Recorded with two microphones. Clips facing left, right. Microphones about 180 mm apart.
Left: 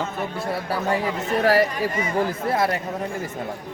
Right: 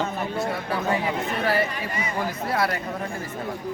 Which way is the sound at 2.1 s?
25° left (ahead or behind).